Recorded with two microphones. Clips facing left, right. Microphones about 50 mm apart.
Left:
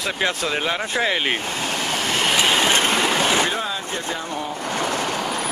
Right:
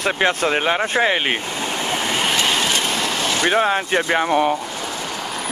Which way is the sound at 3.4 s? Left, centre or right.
Right.